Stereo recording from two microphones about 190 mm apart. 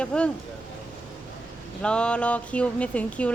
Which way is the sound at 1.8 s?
5° left (ahead or behind).